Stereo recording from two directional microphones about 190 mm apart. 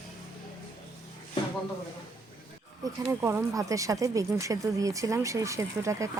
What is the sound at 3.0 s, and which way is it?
Speech, 15° right (ahead or behind).